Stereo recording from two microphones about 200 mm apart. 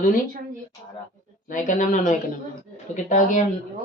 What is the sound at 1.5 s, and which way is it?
A woman's voice, 40° left (ahead or behind).